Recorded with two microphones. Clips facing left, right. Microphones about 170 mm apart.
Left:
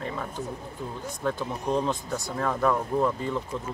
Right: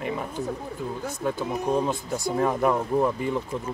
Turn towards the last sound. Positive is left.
turn(degrees=-15)  # may be behind; listen again after turning